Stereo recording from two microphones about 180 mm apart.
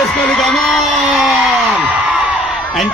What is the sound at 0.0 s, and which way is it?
Whoop, centre (ahead or behind).